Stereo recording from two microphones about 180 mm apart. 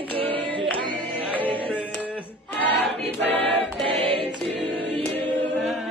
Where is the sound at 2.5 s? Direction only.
10° left (ahead or behind).